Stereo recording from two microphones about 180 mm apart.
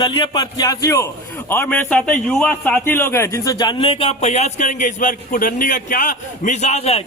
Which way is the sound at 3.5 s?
25° left (ahead or behind).